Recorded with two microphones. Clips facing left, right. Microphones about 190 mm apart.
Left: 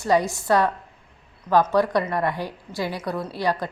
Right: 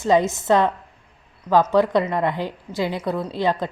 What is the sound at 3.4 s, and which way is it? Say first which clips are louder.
Speech: right 2 dB; 20° right (ahead or behind).